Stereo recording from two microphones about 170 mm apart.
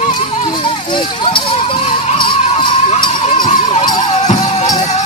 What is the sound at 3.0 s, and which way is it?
Music, 25° left (ahead or behind).